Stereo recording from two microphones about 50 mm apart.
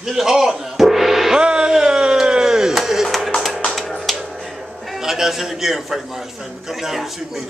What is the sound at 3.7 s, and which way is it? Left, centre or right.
Music, centre.